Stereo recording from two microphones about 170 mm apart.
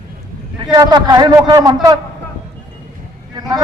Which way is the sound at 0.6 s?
25° right (ahead or behind).